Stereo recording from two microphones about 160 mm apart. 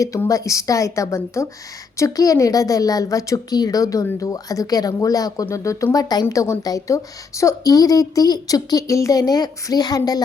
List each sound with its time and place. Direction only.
0.0 s a woman's voice: 20° left (ahead or behind)